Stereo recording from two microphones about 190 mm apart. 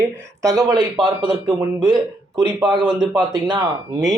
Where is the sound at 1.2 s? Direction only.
25° right (ahead or behind).